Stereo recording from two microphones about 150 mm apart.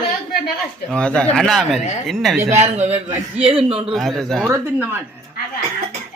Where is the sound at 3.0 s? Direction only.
35° right (ahead or behind).